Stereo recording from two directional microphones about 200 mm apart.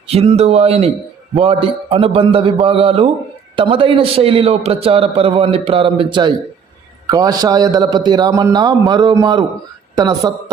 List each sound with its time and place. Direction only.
0.1 s a man's voice: 30° right (ahead or behind)